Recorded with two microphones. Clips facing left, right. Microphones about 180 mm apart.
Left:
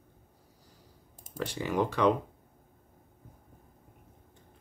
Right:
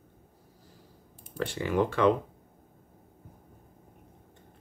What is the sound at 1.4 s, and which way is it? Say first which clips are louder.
Speech: right 2 dB; 15° left (ahead or behind).